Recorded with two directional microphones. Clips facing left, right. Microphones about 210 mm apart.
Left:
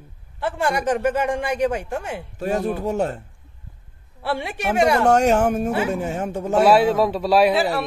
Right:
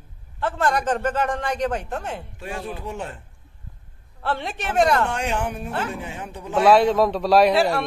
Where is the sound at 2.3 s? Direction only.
40° left (ahead or behind).